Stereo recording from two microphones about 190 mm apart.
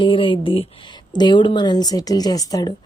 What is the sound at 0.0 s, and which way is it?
Speech, 25° left (ahead or behind).